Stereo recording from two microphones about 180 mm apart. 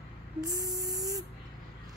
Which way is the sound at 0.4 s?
20° right (ahead or behind).